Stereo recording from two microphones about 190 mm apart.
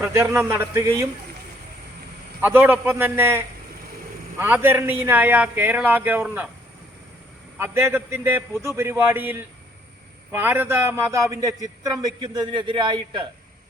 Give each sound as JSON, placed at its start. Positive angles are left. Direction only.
{"t": 0.0, "sound": "a man's voice", "side_deg": -10}
{"t": 2.4, "sound": "a man's voice", "side_deg": -10}
{"t": 7.6, "sound": "a man's voice", "side_deg": -10}